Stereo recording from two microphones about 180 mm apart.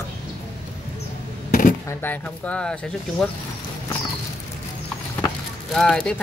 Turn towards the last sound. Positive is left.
turn(degrees=5)  # may be behind; listen again after turning